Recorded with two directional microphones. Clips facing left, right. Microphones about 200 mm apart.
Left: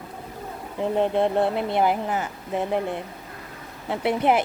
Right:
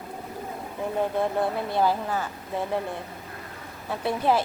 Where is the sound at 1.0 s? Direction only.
25° left (ahead or behind).